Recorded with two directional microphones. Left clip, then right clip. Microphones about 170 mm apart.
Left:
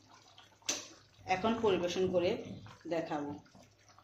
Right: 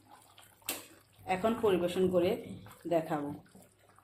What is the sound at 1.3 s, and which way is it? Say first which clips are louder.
Speech: right 1 dB; 20° right (ahead or behind).